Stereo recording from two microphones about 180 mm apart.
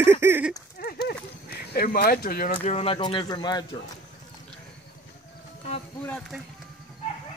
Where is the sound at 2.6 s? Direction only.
35° left (ahead or behind).